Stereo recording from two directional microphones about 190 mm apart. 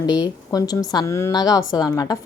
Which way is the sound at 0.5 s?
20° left (ahead or behind).